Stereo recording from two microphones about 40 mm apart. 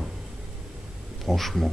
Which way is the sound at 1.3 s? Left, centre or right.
Centre.